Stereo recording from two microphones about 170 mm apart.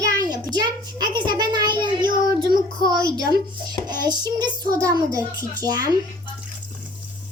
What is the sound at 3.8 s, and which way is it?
Child singing, 25° right (ahead or behind).